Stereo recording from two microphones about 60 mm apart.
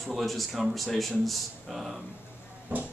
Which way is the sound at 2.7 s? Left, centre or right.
Right.